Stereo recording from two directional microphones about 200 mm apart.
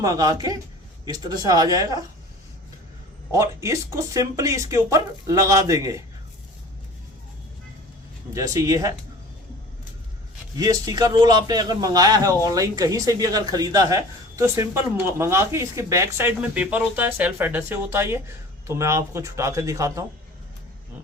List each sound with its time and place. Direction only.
0.0 s speech: 15° right (ahead or behind)
3.3 s a man's voice: 15° right (ahead or behind)
8.3 s a man's voice: 15° right (ahead or behind)
10.6 s a man's voice: 15° right (ahead or behind)